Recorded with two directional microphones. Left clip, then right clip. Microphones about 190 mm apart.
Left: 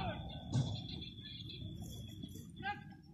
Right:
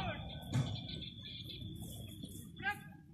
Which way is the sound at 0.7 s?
45° left (ahead or behind).